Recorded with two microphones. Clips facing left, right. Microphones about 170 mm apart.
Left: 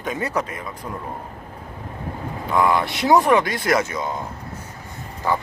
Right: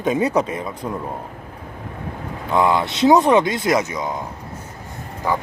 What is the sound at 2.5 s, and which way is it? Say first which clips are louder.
Speech: right 2 dB; 20° right (ahead or behind).